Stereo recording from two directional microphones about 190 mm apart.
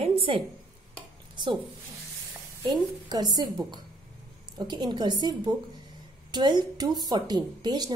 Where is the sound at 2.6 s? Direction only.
20° right (ahead or behind).